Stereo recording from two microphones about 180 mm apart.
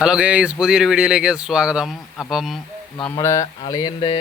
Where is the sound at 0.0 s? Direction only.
5° right (ahead or behind).